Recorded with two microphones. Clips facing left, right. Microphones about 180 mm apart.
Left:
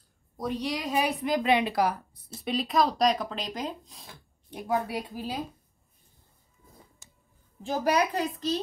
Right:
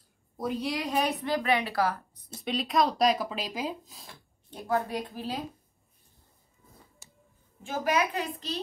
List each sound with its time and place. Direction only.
0.4 s speech: 5° right (ahead or behind)
1.2 s a woman's voice: 20° left (ahead or behind)
2.4 s speech: centre (ahead or behind)
4.5 s a woman's voice: 15° left (ahead or behind)
7.6 s a woman's voice: 35° left (ahead or behind)